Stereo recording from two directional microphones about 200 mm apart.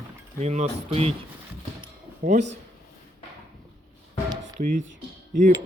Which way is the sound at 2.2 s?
40° right (ahead or behind).